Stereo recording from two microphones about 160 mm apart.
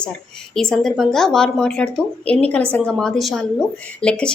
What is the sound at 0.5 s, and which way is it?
A woman's voice, 5° left (ahead or behind).